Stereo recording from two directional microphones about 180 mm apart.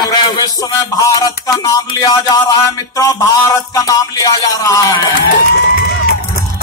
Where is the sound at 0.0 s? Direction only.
20° left (ahead or behind).